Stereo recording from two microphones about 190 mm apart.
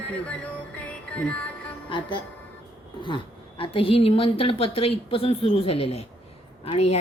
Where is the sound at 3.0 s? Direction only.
25° left (ahead or behind).